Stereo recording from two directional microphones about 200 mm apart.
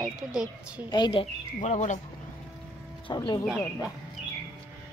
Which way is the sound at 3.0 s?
20° left (ahead or behind).